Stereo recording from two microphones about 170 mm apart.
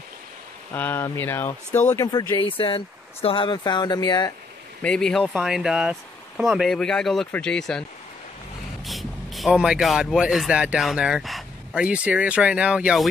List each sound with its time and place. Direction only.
0.7 s speech: 15° left (ahead or behind)
4.8 s speech: 5° left (ahead or behind)
8.8 s speech: centre (ahead or behind)